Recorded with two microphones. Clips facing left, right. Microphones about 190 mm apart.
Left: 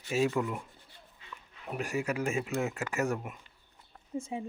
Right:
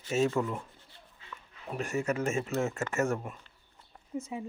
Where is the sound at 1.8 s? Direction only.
10° left (ahead or behind).